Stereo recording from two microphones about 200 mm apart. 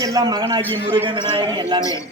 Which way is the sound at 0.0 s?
20° right (ahead or behind).